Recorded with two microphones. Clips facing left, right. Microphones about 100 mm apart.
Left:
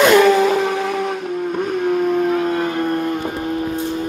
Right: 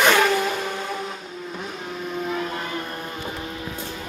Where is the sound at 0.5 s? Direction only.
90° left; by 3.7 s 50° left (ahead or behind).